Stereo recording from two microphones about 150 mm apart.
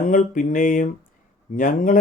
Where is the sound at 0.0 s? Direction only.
60° left (ahead or behind).